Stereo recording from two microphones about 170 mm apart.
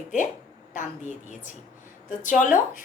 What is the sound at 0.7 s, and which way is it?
Speech, 45° left (ahead or behind).